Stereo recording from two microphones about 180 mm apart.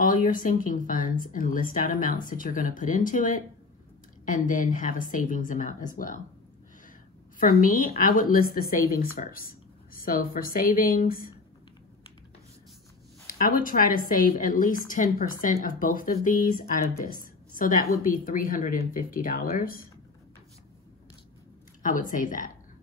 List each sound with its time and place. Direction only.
0.0 s speech: 50° left (ahead or behind)
7.3 s speech: 50° left (ahead or behind)
13.4 s speech: 50° left (ahead or behind)
21.8 s speech: 50° left (ahead or behind)